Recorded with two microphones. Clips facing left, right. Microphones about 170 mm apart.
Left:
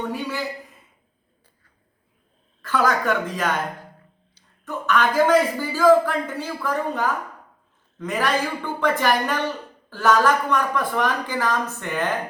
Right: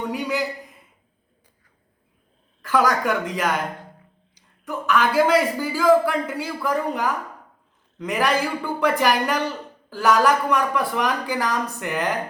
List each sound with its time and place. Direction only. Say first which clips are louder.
0.0 s a man's voice: right 2 dB; 15° right (ahead or behind)
2.6 s a man's voice: right 1 dB; 10° right (ahead or behind)